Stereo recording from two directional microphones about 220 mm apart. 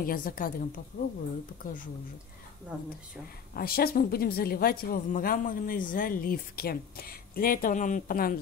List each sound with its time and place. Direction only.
0.0 s a woman's voice: 40° left (ahead or behind)
2.7 s speech: 5° right (ahead or behind)
3.5 s a woman's voice: 45° left (ahead or behind)